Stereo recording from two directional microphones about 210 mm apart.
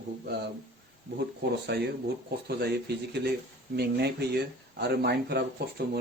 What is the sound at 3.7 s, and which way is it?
Speech, 50° right (ahead or behind).